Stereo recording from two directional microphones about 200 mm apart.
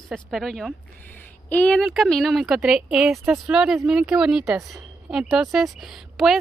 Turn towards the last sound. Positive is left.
turn(degrees=0)  # may be behind; listen again after turning